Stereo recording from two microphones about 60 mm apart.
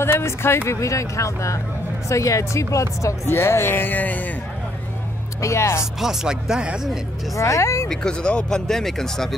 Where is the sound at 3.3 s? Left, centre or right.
Left.